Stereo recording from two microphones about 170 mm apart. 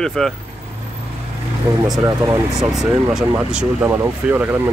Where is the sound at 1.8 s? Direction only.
20° right (ahead or behind).